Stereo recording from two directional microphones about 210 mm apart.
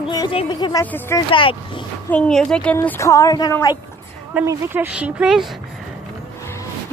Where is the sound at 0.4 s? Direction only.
20° left (ahead or behind).